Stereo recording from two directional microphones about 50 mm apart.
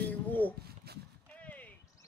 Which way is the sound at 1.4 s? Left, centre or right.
Left.